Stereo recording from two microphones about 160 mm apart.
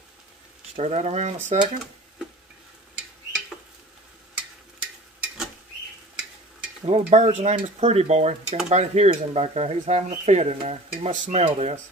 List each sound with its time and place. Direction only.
0.7 s speech: 40° right (ahead or behind)
6.9 s speech: 45° right (ahead or behind)